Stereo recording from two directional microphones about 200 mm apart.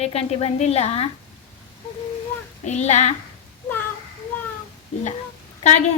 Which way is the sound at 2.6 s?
35° left (ahead or behind).